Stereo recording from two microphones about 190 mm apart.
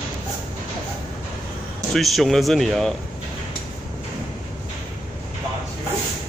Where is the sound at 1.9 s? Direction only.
Centre (ahead or behind).